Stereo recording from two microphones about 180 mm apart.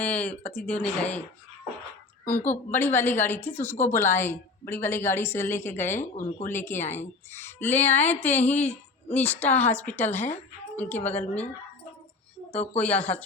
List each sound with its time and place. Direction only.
0.0 s a woman's voice: 5° left (ahead or behind)
2.2 s a woman's voice: 10° left (ahead or behind)
6.0 s speech: 45° left (ahead or behind)
6.5 s a woman's voice: 10° left (ahead or behind)
12.7 s a woman's voice: 10° left (ahead or behind)